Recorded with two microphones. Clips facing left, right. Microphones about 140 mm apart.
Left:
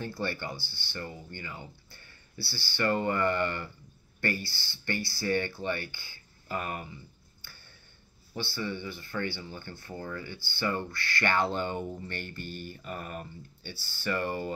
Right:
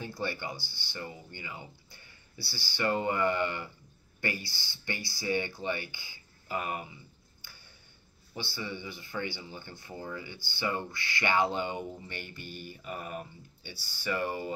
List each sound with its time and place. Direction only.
0.0 s speech: 15° right (ahead or behind)
7.4 s a sound: 15° right (ahead or behind)
8.5 s speech: 15° right (ahead or behind)